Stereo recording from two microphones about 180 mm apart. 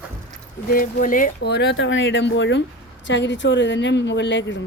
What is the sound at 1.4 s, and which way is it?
Speech, 70° left (ahead or behind).